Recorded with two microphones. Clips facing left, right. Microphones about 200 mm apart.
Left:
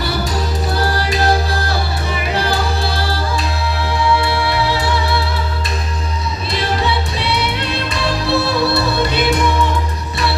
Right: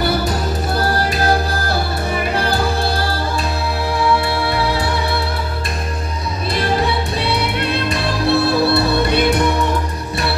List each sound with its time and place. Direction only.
7.2 s music: 55° right (ahead or behind)